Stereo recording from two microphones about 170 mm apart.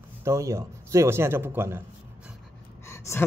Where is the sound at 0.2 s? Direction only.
15° right (ahead or behind).